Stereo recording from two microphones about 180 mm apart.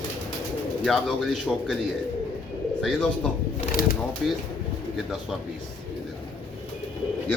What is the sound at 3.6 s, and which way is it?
Shuffling cards, 55° left (ahead or behind).